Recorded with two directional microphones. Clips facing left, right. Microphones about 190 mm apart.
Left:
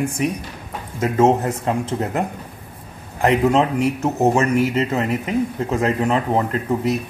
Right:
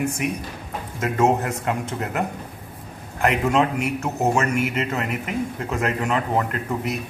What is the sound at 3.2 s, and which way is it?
A man's voice, 30° left (ahead or behind).